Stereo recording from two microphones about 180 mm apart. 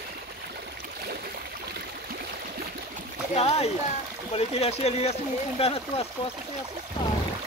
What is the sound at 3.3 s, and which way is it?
Speech, 35° left (ahead or behind).